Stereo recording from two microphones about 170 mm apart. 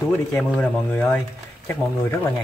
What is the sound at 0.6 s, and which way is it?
Speech, 5° left (ahead or behind).